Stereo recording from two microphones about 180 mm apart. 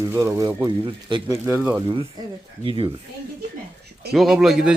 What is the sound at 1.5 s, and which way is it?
Speech, 5° right (ahead or behind).